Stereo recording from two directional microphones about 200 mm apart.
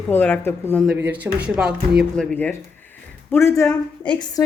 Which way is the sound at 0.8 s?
10° right (ahead or behind).